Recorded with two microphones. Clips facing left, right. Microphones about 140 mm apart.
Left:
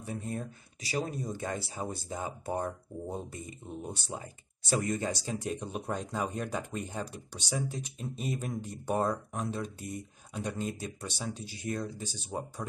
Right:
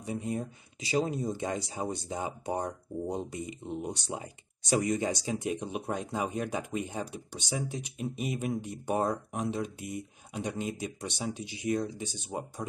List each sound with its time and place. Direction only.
0.0 s speech: 15° right (ahead or behind)